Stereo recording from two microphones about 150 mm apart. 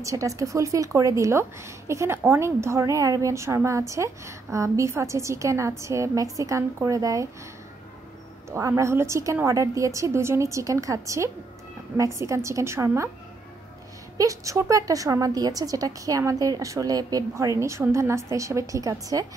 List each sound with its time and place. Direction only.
0.0 s speech: 20° right (ahead or behind)
8.5 s speech: 20° right (ahead or behind)
14.1 s speech: 20° right (ahead or behind)